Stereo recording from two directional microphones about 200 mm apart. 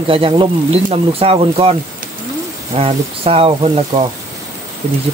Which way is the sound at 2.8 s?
30° right (ahead or behind).